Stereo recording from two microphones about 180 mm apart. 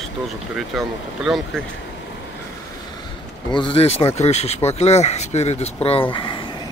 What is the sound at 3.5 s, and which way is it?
Speech, 30° left (ahead or behind).